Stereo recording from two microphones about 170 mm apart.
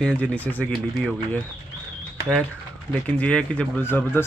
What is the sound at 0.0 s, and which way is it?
A man's voice, 5° left (ahead or behind).